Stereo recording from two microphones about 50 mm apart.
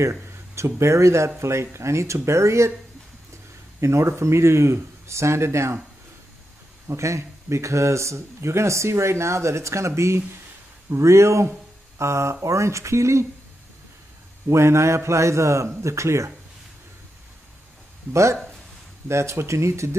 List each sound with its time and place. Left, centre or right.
0.3 s speech: right
3.8 s speech: right
6.9 s speech: right
14.5 s speech: right
18.1 s speech: right
19.0 s speech: right